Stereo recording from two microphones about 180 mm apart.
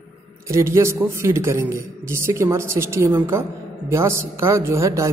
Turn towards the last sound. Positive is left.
turn(degrees=-15)  # may be behind; listen again after turning